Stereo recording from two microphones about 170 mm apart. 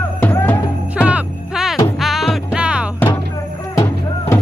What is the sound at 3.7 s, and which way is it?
Music, 15° left (ahead or behind).